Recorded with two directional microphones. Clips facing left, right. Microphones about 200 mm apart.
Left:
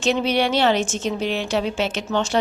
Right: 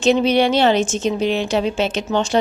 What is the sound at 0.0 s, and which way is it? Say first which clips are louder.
A woman's voice: right 5 dB; 20° right (ahead or behind).